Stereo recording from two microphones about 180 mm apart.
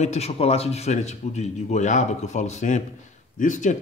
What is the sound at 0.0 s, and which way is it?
Speech, 35° left (ahead or behind).